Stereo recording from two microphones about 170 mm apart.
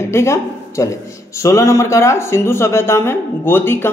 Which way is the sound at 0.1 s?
15° left (ahead or behind).